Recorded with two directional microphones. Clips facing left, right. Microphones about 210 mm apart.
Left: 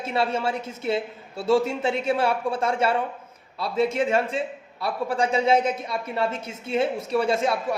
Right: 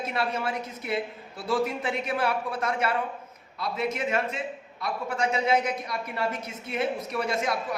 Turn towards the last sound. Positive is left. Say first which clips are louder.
# left 6 dB
turn(degrees=30)  # may be behind; listen again after turning